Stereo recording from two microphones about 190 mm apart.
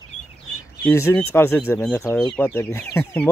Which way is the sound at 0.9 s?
10° left (ahead or behind).